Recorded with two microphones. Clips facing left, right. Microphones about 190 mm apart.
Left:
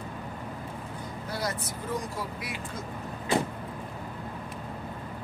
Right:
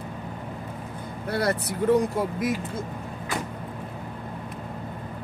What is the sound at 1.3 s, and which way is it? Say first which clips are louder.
Speech: right 8 dB; 65° right (ahead or behind).